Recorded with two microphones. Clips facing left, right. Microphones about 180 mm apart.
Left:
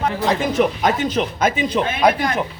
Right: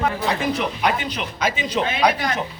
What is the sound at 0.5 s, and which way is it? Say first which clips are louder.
Speech: left 5 dB; 45° left (ahead or behind).